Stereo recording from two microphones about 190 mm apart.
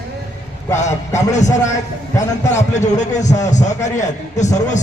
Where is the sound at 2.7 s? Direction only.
40° left (ahead or behind).